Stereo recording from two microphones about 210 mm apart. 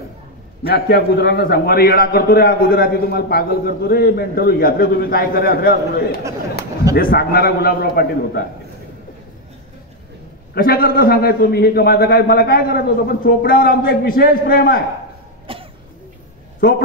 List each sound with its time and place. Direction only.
0.7 s a man's voice: 45° left (ahead or behind)
10.5 s a man's voice: 45° left (ahead or behind)
15.5 s cough: 25° right (ahead or behind)